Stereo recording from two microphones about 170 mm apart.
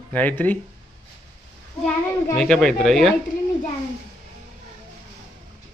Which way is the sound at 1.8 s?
5° left (ahead or behind).